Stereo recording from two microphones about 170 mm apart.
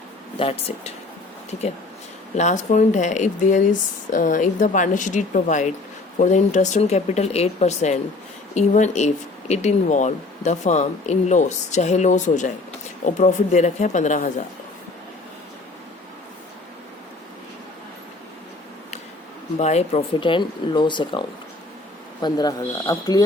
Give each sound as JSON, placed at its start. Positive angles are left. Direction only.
{"t": 0.3, "sound": "speech", "side_deg": 35}
{"t": 2.3, "sound": "speech", "side_deg": 45}
{"t": 19.5, "sound": "speech", "side_deg": 40}